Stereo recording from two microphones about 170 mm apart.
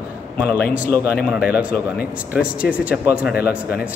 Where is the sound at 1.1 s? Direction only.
5° right (ahead or behind).